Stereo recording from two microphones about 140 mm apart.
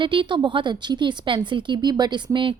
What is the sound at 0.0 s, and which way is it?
A woman's voice, 35° right (ahead or behind).